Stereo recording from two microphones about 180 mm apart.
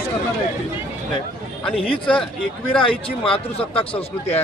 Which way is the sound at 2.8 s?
30° left (ahead or behind).